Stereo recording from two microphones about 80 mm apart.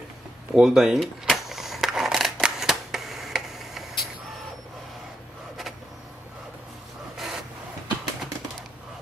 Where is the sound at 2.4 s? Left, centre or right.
Centre.